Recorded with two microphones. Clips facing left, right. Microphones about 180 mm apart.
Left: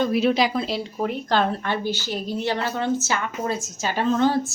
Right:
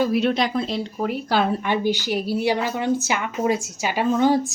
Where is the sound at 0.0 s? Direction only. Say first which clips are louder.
Even; centre (ahead or behind).